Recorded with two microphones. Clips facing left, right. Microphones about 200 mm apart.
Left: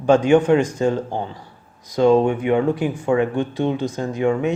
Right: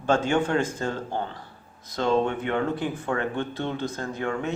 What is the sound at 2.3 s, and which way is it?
Speech, 15° left (ahead or behind).